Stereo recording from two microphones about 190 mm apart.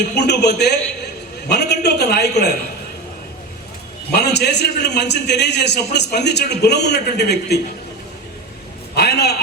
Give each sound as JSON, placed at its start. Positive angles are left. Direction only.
{"t": 0.2, "sound": "a man's voice", "side_deg": 60}
{"t": 4.1, "sound": "a man's voice", "side_deg": 60}
{"t": 9.0, "sound": "a sound", "side_deg": 60}